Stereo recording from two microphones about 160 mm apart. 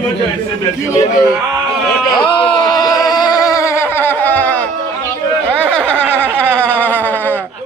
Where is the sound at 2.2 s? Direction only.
30° left (ahead or behind); by 6.7 s 10° left (ahead or behind).